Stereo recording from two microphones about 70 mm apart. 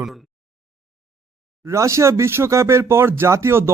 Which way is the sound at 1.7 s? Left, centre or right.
Right.